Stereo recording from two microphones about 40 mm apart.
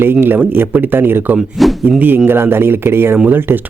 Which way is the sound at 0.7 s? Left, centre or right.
Right.